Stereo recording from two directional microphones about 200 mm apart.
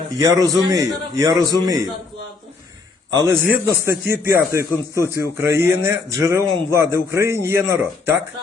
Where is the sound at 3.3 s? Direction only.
10° right (ahead or behind).